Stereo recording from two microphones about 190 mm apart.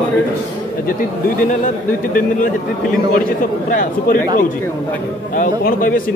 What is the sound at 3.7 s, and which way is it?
Speech, 45° left (ahead or behind).